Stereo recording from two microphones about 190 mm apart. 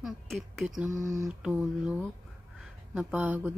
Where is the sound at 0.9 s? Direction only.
15° right (ahead or behind).